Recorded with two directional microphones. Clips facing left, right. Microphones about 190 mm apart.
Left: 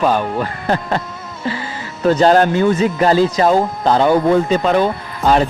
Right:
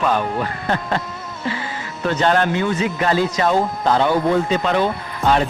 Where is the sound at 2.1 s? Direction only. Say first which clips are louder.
Left 6 dB; 35° left (ahead or behind).